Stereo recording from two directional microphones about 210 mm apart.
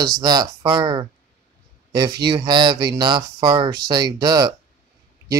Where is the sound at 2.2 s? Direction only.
20° right (ahead or behind).